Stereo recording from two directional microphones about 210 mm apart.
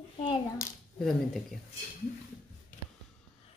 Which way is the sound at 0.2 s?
20° left (ahead or behind).